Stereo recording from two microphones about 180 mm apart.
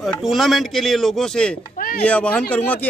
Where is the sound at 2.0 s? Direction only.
10° left (ahead or behind).